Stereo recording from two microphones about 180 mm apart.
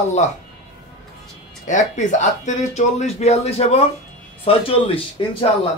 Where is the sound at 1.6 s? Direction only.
40° left (ahead or behind).